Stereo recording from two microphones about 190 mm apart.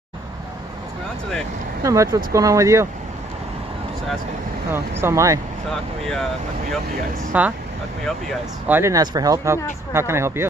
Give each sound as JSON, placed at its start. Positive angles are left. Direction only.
{"t": 1.8, "sound": "speech", "side_deg": -15}
{"t": 4.7, "sound": "speech", "side_deg": -15}
{"t": 5.7, "sound": "speech", "side_deg": 0}
{"t": 7.3, "sound": "speech", "side_deg": -10}
{"t": 8.6, "sound": "speech", "side_deg": -10}